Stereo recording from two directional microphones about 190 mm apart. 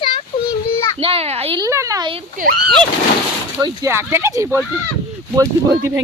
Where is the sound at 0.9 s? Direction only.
30° right (ahead or behind).